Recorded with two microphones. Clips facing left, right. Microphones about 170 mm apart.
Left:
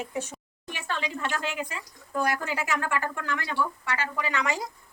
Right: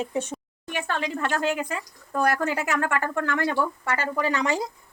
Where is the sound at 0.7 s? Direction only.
55° right (ahead or behind); by 4.6 s 30° right (ahead or behind).